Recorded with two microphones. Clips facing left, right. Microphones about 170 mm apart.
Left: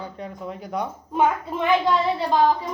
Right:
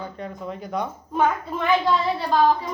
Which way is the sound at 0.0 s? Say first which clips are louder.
Right 1 dB; 10° left (ahead or behind).